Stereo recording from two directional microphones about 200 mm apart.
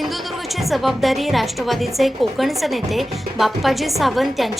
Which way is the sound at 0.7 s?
Centre (ahead or behind).